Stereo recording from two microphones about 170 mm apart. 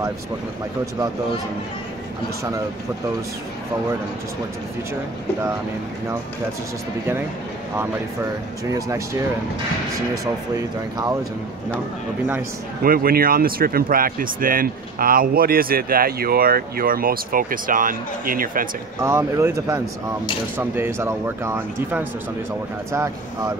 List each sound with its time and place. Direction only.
8.6 s speech: 20° right (ahead or behind)
12.8 s speech: 60° right (ahead or behind)
18.9 s speech: 15° right (ahead or behind)